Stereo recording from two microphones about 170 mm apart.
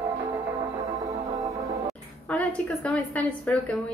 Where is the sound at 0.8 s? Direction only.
20° right (ahead or behind).